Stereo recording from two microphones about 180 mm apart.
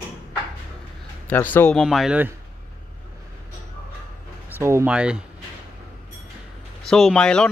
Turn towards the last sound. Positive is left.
turn(degrees=5)  # may be behind; listen again after turning